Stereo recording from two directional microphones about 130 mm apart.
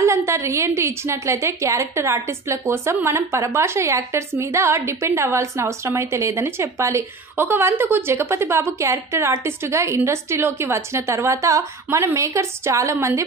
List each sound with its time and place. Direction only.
0.0 s a woman's voice: 20° right (ahead or behind)